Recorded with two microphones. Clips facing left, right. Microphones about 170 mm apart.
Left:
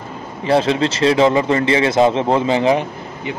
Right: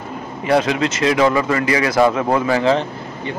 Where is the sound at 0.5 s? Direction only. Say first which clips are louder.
Left 1 dB; 30° left (ahead or behind).